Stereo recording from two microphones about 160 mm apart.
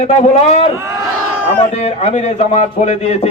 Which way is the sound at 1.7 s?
40° left (ahead or behind).